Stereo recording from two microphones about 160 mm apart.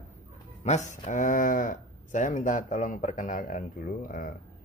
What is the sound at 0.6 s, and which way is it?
Speech, 45° left (ahead or behind).